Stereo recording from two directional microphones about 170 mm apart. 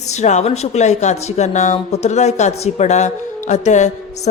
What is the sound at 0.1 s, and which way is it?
A woman's voice, 40° left (ahead or behind).